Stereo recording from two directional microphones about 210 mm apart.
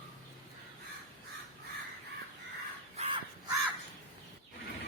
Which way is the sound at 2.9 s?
30° right (ahead or behind).